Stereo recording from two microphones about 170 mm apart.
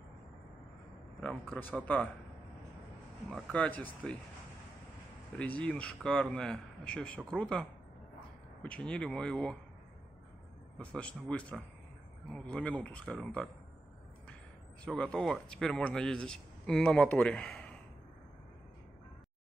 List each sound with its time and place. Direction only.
1.2 s a man's voice: 10° left (ahead or behind)
3.3 s a man's voice: 5° left (ahead or behind)
5.4 s a man's voice: 10° left (ahead or behind)
8.6 s speech: 5° left (ahead or behind)
10.8 s a man's voice: 5° left (ahead or behind)
14.9 s speech: 5° left (ahead or behind)